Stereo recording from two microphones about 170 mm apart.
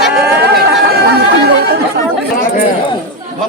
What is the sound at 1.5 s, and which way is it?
Chatter, 75° right (ahead or behind).